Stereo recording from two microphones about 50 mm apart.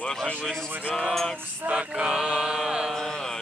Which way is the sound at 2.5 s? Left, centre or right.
Centre.